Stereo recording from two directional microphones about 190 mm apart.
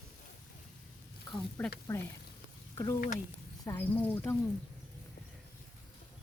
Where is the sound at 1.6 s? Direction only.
10° left (ahead or behind).